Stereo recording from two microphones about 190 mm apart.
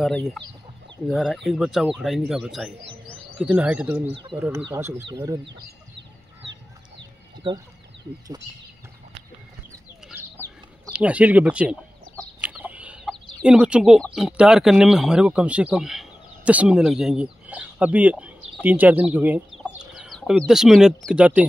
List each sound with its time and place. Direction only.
0.0 s speech: centre (ahead or behind); by 5.4 s 15° right (ahead or behind)
7.4 s speech: 25° right (ahead or behind)
10.9 s speech: 5° right (ahead or behind)
12.4 s chicken: 10° right (ahead or behind)
13.1 s speech: 5° right (ahead or behind)